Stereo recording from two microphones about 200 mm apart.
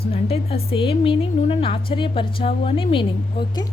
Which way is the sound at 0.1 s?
30° left (ahead or behind).